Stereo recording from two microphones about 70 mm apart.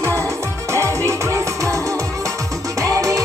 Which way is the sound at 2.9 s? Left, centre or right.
Right.